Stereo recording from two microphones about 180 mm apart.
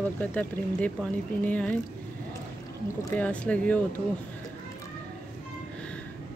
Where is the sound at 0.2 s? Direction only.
5° left (ahead or behind).